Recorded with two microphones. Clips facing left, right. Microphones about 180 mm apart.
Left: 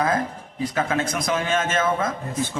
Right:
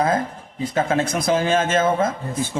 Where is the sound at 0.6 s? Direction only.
25° right (ahead or behind).